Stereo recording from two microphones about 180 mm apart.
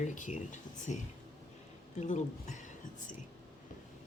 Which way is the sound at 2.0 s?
40° left (ahead or behind).